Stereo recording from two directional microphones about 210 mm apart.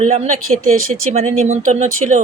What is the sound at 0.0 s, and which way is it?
Speech, 30° right (ahead or behind).